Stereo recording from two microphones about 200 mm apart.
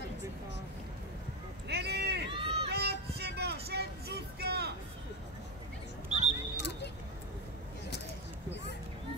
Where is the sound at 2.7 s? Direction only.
55° right (ahead or behind).